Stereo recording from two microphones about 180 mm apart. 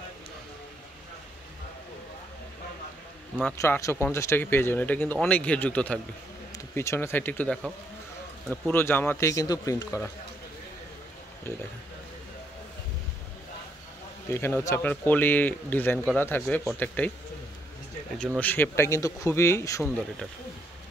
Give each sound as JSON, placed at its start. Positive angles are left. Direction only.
{"t": 3.4, "sound": "speech", "side_deg": 10}
{"t": 14.3, "sound": "speech", "side_deg": 15}
{"t": 18.4, "sound": "speech", "side_deg": 10}